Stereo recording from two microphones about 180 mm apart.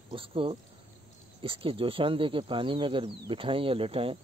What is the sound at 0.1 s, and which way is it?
Speech, 30° right (ahead or behind).